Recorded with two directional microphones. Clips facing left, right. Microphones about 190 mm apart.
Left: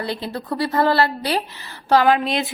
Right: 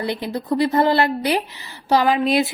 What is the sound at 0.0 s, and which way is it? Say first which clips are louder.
A woman's voice: right 2 dB; 15° right (ahead or behind).